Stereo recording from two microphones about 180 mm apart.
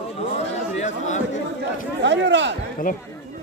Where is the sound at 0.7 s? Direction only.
40° left (ahead or behind).